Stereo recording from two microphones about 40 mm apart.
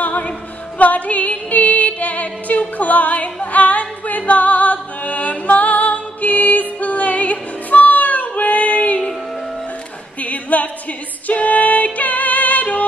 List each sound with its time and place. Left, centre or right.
0.0 s music: left
10.2 s a capella: left
11.2 s music: left